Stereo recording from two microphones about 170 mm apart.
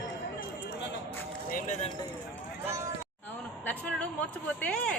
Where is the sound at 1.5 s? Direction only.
45° left (ahead or behind).